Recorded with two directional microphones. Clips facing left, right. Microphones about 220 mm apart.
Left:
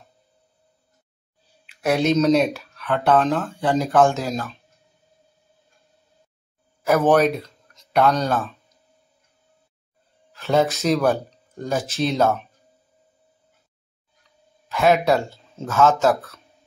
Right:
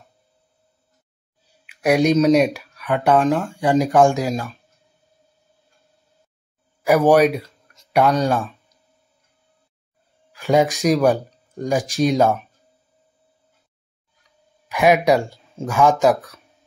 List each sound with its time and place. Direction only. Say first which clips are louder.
1.7 s speech: right 3 dB; 15° right (ahead or behind)
6.8 s speech: right 3 dB; 15° right (ahead or behind)
10.3 s speech: right 2 dB; 15° right (ahead or behind)
14.7 s speech: right 2 dB; 15° right (ahead or behind)